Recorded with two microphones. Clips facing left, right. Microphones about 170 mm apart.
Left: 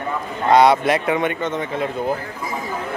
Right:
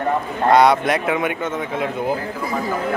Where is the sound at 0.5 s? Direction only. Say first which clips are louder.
Left 1 dB; centre (ahead or behind).